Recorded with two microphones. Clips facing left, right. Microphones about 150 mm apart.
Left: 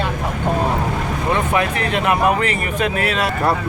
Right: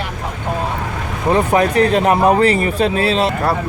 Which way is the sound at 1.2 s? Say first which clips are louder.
Right 6 dB; 35° right (ahead or behind).